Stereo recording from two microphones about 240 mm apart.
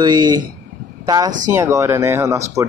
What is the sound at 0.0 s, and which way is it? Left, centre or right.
Speech, centre.